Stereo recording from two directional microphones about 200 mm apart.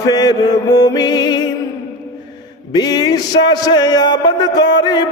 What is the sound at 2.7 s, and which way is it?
Music, 20° left (ahead or behind).